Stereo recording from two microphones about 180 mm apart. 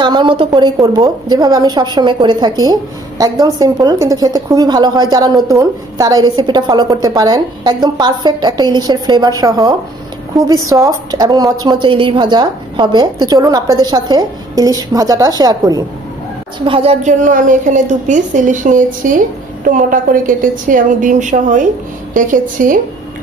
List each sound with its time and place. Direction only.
0.0 s a woman's voice: 25° right (ahead or behind)
16.6 s a woman's voice: 30° right (ahead or behind); by 22.8 s 45° right (ahead or behind)